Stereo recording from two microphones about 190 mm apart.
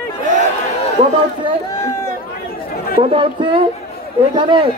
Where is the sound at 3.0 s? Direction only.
25° right (ahead or behind).